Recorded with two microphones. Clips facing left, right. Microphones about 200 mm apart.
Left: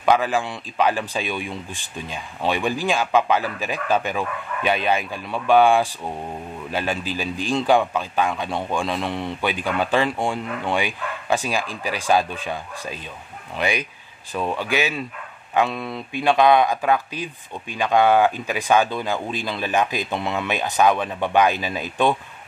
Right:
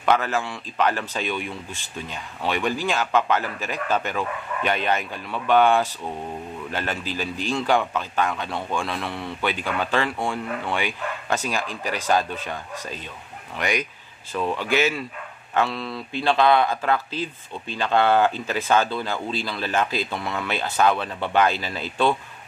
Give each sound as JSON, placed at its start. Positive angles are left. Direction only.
{"t": 0.0, "sound": "speech", "side_deg": 15}
{"t": 14.3, "sound": "speech", "side_deg": 15}